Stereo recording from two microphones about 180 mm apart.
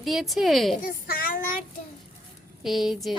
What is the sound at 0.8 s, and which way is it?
Speech, 55° left (ahead or behind).